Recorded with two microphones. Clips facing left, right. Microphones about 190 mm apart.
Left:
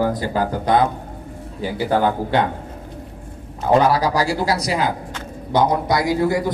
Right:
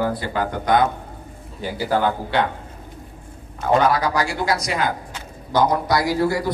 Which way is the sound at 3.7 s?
35° left (ahead or behind).